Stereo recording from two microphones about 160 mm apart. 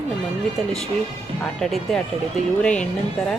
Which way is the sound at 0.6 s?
Centre (ahead or behind).